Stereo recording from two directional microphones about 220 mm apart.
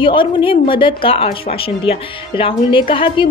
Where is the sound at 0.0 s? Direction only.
25° left (ahead or behind).